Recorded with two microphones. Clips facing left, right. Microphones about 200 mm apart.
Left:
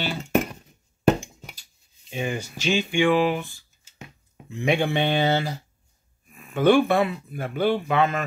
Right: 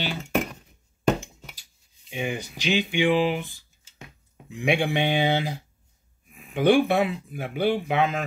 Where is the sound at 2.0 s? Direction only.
15° right (ahead or behind).